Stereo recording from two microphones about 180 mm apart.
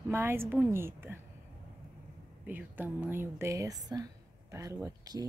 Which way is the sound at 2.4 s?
10° right (ahead or behind).